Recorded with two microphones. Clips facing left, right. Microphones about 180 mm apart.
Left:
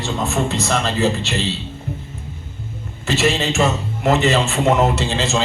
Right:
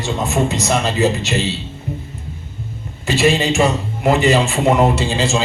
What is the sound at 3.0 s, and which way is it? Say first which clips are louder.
A man's voice: right 3 dB; 10° right (ahead or behind).